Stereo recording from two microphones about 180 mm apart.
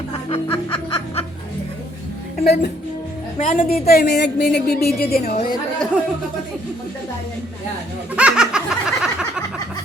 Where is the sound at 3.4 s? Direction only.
50° left (ahead or behind).